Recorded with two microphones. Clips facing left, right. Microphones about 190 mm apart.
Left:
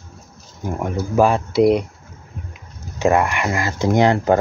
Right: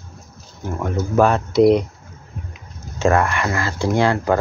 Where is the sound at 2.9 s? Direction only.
15° left (ahead or behind).